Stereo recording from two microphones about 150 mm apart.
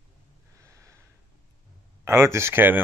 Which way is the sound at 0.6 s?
20° right (ahead or behind).